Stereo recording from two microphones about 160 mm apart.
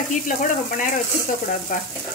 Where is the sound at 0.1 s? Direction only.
55° left (ahead or behind).